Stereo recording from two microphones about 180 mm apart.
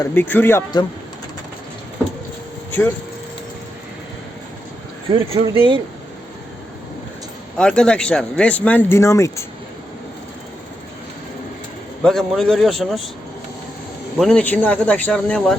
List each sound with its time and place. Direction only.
0.0 s speech: 10° left (ahead or behind)
5.1 s speech: 30° right (ahead or behind)
7.5 s speech: 5° left (ahead or behind)
12.0 s a man's voice: 5° left (ahead or behind)
14.2 s speech: 5° left (ahead or behind)